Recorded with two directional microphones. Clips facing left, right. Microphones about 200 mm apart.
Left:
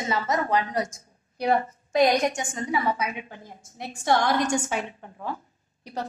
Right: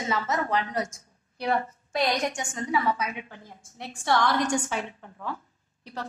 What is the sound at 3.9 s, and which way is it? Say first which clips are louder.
Speech: left 2 dB; 45° left (ahead or behind).